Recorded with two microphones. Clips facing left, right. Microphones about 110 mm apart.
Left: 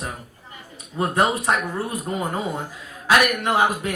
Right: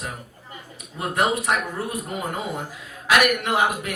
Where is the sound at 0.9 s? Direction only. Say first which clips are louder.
Left 2 dB; 30° left (ahead or behind).